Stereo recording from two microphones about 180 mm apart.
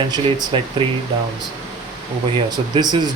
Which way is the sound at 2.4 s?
25° right (ahead or behind).